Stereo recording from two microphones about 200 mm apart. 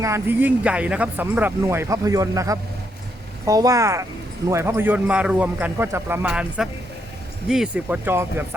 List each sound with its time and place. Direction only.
0.0 s speech: 10° right (ahead or behind)